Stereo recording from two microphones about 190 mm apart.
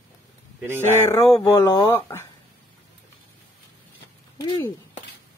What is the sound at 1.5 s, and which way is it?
Speech, 20° left (ahead or behind).